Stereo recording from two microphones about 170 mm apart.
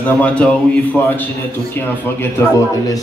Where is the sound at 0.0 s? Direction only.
5° left (ahead or behind).